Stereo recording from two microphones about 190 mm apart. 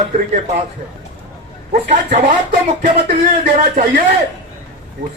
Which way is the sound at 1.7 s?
40° right (ahead or behind).